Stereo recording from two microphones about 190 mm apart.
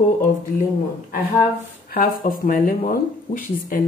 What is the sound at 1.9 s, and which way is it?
Speech, 50° left (ahead or behind).